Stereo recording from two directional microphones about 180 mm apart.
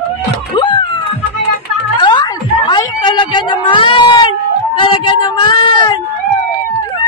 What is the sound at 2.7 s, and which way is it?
Cat, 25° left (ahead or behind).